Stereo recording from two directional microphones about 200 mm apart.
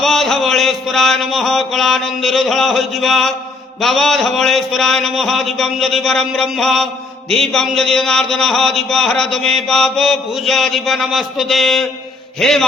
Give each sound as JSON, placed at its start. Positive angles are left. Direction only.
{"t": 0.0, "sound": "speech", "side_deg": 0}